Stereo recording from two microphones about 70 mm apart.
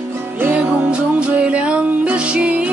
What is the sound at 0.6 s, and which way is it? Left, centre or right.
Music, centre.